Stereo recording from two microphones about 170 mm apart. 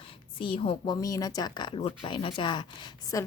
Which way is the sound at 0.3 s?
30° left (ahead or behind).